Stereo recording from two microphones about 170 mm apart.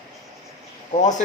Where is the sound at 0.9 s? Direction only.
45° left (ahead or behind).